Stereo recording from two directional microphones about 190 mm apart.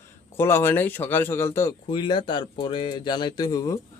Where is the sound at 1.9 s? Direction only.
25° left (ahead or behind).